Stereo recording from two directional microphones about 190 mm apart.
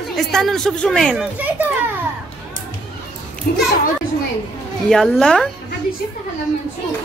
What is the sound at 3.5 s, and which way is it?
Speech, 55° left (ahead or behind).